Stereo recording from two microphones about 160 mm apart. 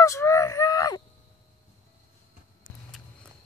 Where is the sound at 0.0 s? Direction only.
20° left (ahead or behind).